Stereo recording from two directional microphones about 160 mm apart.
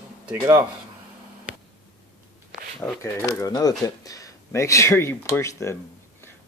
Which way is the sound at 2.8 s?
10° left (ahead or behind).